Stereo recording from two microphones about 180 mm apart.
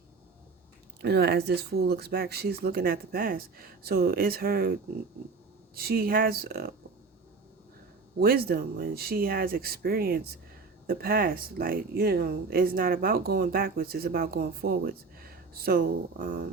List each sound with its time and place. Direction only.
1.0 s speech: 60° right (ahead or behind)
8.2 s speech: 60° right (ahead or behind)